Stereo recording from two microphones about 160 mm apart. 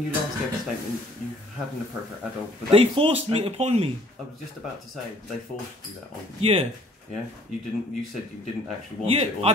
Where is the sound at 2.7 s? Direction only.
35° right (ahead or behind).